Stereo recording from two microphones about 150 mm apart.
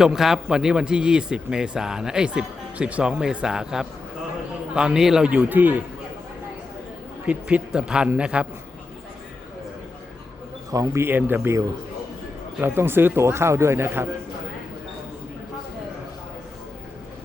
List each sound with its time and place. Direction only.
0.0 s a man's voice: 5° right (ahead or behind)
7.3 s a man's voice: 10° right (ahead or behind)
10.7 s a man's voice: 20° right (ahead or behind)
12.5 s a man's voice: 15° right (ahead or behind)